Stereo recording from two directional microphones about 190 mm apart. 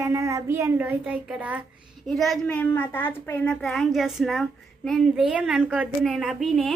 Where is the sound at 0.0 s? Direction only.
15° right (ahead or behind).